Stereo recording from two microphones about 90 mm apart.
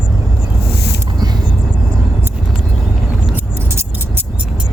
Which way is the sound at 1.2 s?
55° right (ahead or behind).